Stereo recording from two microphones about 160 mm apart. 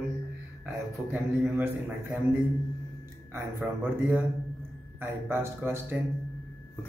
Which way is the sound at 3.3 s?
10° right (ahead or behind).